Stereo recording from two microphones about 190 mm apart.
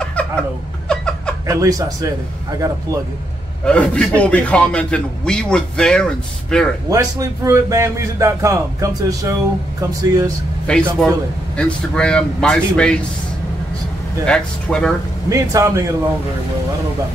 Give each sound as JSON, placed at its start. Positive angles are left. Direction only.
{"t": 0.0, "sound": "laughter", "side_deg": 5}
{"t": 0.8, "sound": "a sound", "side_deg": 5}
{"t": 1.5, "sound": "a man's voice", "side_deg": -15}
{"t": 3.6, "sound": "speech", "side_deg": 5}
{"t": 6.9, "sound": "a man's voice", "side_deg": -15}
{"t": 10.7, "sound": "speech", "side_deg": 5}
{"t": 14.2, "sound": "speech", "side_deg": 5}
{"t": 15.2, "sound": "a man's voice", "side_deg": -15}